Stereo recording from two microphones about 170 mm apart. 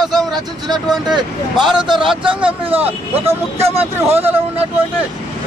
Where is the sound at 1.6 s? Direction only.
5° right (ahead or behind).